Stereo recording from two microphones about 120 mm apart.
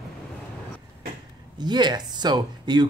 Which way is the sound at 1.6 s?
35° right (ahead or behind).